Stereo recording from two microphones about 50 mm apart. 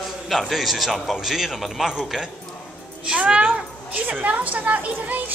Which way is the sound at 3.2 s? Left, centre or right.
Right.